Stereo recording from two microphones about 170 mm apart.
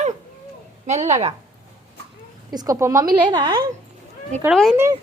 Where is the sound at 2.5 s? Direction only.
20° right (ahead or behind).